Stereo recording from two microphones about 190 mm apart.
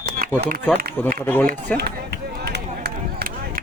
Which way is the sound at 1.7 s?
55° right (ahead or behind).